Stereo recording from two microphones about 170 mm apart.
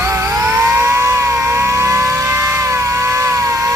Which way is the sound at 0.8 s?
15° right (ahead or behind).